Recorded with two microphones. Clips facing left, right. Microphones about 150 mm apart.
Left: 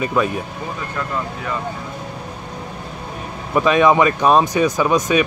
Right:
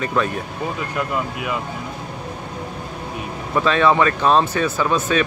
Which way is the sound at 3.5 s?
15° left (ahead or behind).